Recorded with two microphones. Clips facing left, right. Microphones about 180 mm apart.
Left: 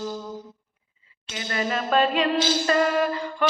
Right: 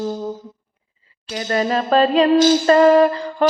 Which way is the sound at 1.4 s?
40° right (ahead or behind).